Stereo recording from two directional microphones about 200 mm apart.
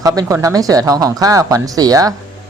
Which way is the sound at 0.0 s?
15° right (ahead or behind).